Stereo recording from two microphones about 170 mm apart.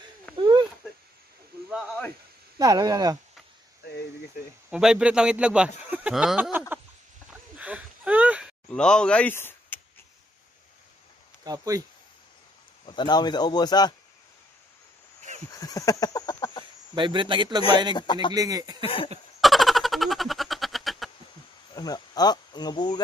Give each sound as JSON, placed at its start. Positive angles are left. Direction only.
{"t": 0.4, "sound": "a sound", "side_deg": -30}
{"t": 1.7, "sound": "snake", "side_deg": -5}
{"t": 2.6, "sound": "a man's voice", "side_deg": -20}
{"t": 4.6, "sound": "speech", "side_deg": -5}
{"t": 7.2, "sound": "a sound", "side_deg": -10}
{"t": 8.6, "sound": "speech", "side_deg": 5}
{"t": 11.4, "sound": "a man's voice", "side_deg": -20}
{"t": 12.8, "sound": "a man's voice", "side_deg": 25}
{"t": 15.5, "sound": "a sound", "side_deg": 20}
{"t": 16.9, "sound": "a man's voice", "side_deg": -30}
{"t": 17.9, "sound": "a man's voice", "side_deg": 25}
{"t": 18.3, "sound": "a man's voice", "side_deg": -20}
{"t": 19.4, "sound": "a sound", "side_deg": 0}
{"t": 21.7, "sound": "speech", "side_deg": 25}